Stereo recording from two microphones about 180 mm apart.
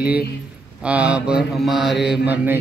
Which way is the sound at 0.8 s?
5° right (ahead or behind).